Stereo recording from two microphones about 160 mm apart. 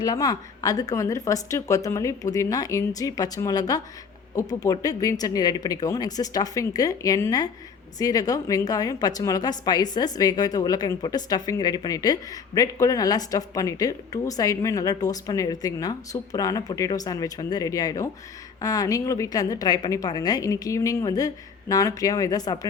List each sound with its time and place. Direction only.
0.0 s a woman's voice: 25° left (ahead or behind)